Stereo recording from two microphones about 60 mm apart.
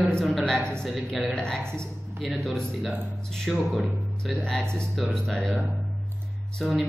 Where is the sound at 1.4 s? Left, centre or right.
Centre.